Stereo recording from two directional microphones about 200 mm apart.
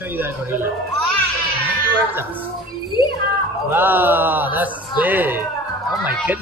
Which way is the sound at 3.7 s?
10° right (ahead or behind).